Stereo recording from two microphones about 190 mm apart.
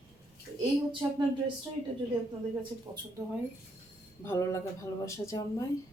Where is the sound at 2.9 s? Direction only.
15° right (ahead or behind).